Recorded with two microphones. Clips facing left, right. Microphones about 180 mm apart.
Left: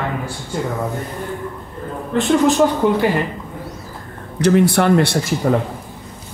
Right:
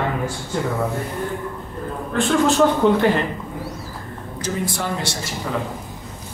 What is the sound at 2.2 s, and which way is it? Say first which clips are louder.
Speech: left 3 dB; 20° left (ahead or behind).